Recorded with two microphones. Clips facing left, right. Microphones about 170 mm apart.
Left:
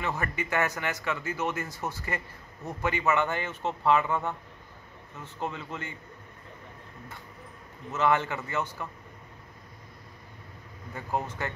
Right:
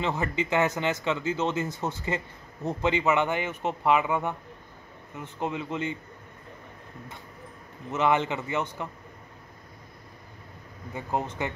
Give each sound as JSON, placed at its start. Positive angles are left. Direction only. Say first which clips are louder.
{"t": 0.0, "sound": "speech", "louder": "right 4 dB", "side_deg": -20}
{"t": 7.9, "sound": "speech", "louder": "right 2 dB", "side_deg": -20}
{"t": 11.0, "sound": "speech", "louder": "right 2 dB", "side_deg": -20}